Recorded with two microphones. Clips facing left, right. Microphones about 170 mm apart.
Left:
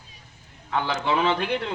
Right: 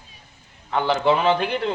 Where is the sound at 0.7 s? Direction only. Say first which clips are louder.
Right 6 dB; 35° right (ahead or behind).